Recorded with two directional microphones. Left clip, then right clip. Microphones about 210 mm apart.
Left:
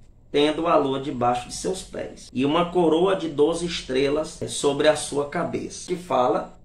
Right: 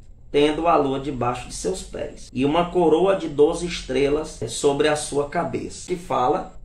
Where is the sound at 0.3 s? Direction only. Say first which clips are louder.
Right 2 dB; 5° left (ahead or behind).